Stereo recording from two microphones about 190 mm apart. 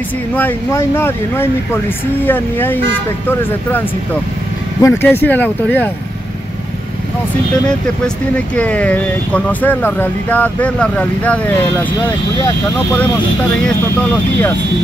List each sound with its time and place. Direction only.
0.4 s speech: 10° left (ahead or behind)
4.8 s speech: 10° left (ahead or behind)
8.5 s speech: 5° left (ahead or behind)
13.7 s speech: 10° left (ahead or behind)